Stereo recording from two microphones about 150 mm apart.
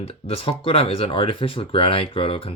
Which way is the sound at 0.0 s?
40° left (ahead or behind).